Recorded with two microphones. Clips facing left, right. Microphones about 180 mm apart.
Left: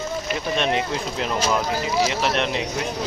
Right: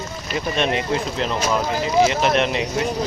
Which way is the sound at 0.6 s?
Centre (ahead or behind).